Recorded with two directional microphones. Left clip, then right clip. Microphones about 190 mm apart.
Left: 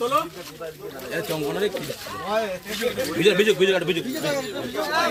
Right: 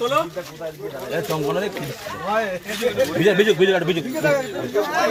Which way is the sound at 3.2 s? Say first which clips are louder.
Right 1 dB; 35° right (ahead or behind).